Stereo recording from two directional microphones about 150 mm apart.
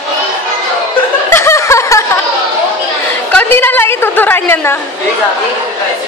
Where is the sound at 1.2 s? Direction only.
15° left (ahead or behind).